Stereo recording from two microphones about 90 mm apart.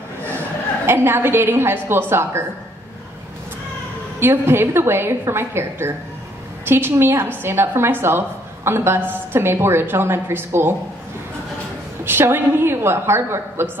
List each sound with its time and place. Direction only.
0.8 s a woman's voice: 25° right (ahead or behind)
4.2 s a woman's voice: 25° right (ahead or behind)
12.0 s a woman's voice: 25° right (ahead or behind)